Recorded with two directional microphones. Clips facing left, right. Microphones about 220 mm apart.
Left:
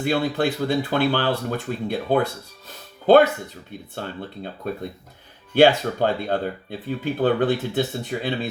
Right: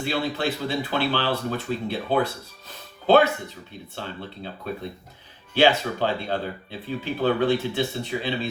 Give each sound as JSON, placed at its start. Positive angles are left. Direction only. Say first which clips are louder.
{"t": 0.0, "sound": "speech", "louder": "left 4 dB", "side_deg": 50}
{"t": 3.9, "sound": "speech", "louder": "left 3 dB", "side_deg": 50}